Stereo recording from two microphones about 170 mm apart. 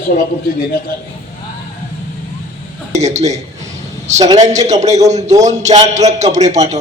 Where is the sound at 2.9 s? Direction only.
40° right (ahead or behind).